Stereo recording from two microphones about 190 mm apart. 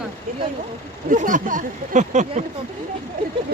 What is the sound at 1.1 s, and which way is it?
Speech, 45° right (ahead or behind).